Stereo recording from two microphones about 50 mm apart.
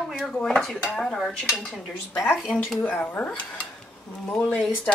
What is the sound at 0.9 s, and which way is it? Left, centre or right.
Stir, centre.